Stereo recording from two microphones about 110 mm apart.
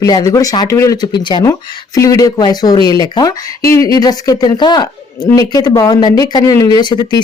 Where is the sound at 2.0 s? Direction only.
30° left (ahead or behind).